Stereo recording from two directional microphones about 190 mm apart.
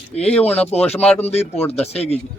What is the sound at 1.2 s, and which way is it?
Speech, 35° left (ahead or behind).